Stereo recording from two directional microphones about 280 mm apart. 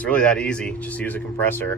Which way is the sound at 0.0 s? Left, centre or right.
Centre.